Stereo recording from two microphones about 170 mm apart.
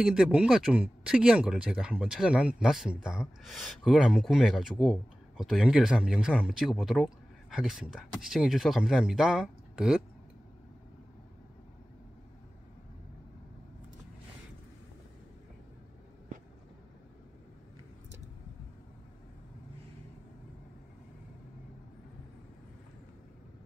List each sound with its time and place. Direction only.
0.0 s speech: 5° right (ahead or behind)